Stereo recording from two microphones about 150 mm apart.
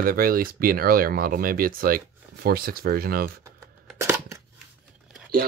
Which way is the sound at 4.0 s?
20° right (ahead or behind).